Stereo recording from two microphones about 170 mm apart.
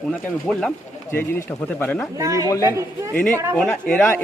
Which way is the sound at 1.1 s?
15° left (ahead or behind).